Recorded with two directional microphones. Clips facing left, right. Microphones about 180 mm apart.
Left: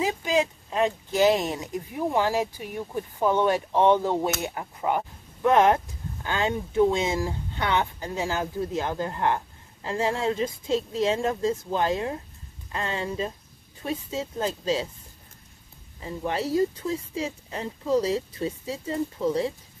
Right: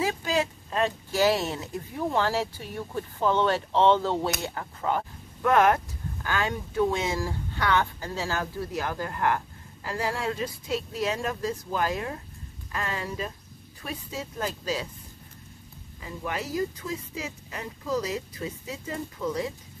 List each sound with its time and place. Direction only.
0.0 s speech: 15° left (ahead or behind)
16.0 s speech: 30° left (ahead or behind)